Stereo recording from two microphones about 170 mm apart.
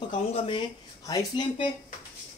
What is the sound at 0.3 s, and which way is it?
Speech, 30° left (ahead or behind).